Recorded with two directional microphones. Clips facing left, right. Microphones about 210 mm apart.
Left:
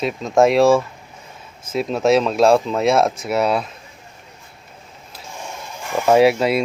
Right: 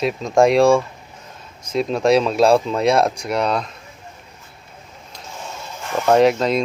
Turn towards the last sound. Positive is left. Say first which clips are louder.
# left 1 dB
turn(degrees=10)  # may be behind; listen again after turning